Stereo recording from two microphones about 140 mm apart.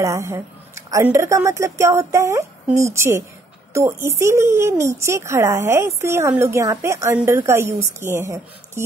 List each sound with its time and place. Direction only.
0.0 s a woman's voice: 20° right (ahead or behind)